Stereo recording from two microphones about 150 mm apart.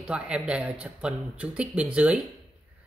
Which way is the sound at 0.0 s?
5° right (ahead or behind).